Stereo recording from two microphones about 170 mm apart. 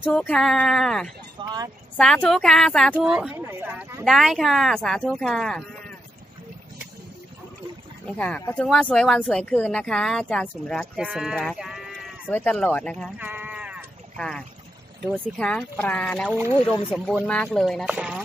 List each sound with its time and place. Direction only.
0.0 s speech: 5° left (ahead or behind)
1.4 s speech: 25° right (ahead or behind)
2.0 s speech: 5° left (ahead or behind)
4.0 s speech: centre (ahead or behind)
8.0 s speech: 5° left (ahead or behind)
13.2 s sheep: 10° right (ahead or behind)
14.1 s speech: 5° left (ahead or behind)